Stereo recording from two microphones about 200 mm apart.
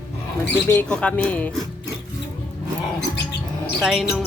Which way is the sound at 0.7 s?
5° left (ahead or behind).